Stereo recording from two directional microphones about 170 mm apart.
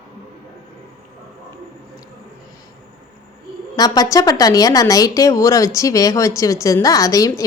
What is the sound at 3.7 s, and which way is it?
A woman's voice, 20° left (ahead or behind).